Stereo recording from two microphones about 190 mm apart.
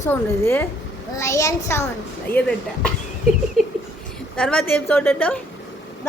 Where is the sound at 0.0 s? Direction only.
15° left (ahead or behind).